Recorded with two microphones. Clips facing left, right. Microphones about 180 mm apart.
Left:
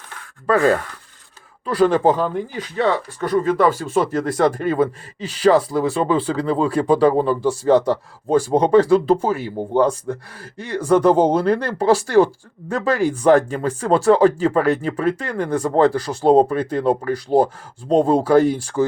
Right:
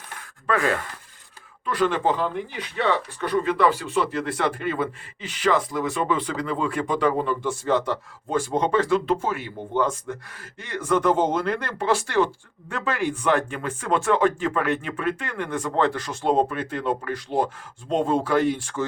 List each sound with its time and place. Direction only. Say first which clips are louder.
0.4 s speech: left 7 dB; 40° left (ahead or behind)